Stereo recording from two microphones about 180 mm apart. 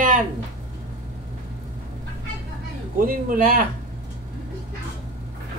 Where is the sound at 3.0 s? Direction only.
50° right (ahead or behind).